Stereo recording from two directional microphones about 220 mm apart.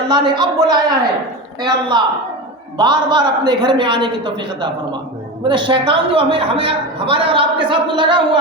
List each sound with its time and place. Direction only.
0.1 s a woman's voice: 20° right (ahead or behind)
1.9 s a man's voice: 20° right (ahead or behind)